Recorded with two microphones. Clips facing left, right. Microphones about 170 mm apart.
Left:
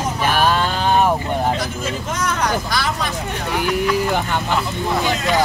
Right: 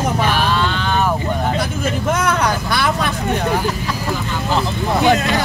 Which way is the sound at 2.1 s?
60° right (ahead or behind).